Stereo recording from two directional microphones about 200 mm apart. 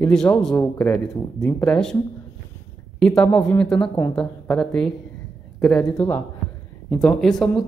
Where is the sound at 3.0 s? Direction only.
5° left (ahead or behind).